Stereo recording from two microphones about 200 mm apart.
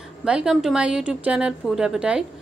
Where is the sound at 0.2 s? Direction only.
5° right (ahead or behind).